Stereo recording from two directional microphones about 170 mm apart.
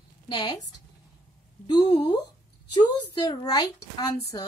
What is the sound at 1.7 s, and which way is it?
Speech, 25° left (ahead or behind).